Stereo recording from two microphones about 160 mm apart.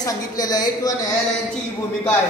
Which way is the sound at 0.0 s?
25° left (ahead or behind).